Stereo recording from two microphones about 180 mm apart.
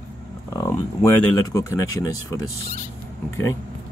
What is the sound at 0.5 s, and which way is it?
Speech, 15° left (ahead or behind).